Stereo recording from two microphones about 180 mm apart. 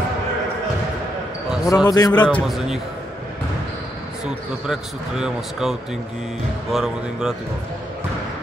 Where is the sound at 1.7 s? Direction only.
20° left (ahead or behind).